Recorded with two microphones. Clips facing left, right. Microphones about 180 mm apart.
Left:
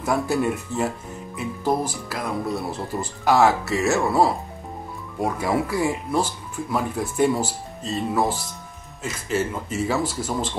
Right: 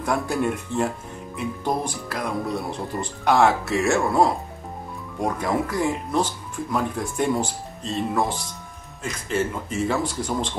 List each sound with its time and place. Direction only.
0.0 s speech: 5° left (ahead or behind)